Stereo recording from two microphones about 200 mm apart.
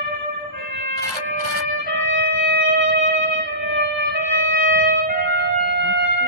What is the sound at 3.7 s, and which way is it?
Music, 60° right (ahead or behind).